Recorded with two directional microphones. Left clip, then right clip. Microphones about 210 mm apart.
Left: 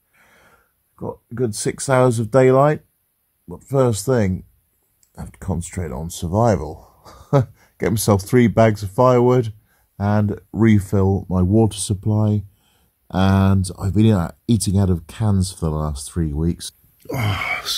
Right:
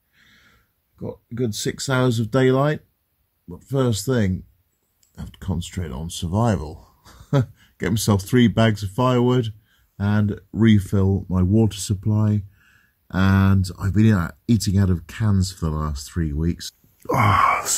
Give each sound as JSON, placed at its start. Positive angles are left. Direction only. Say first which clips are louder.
{"t": 0.2, "sound": "a sound", "louder": "left 1 dB", "side_deg": 0}
{"t": 0.9, "sound": "speech", "louder": "left 3 dB", "side_deg": 5}
{"t": 17.0, "sound": "groan", "louder": "right 8 dB", "side_deg": -20}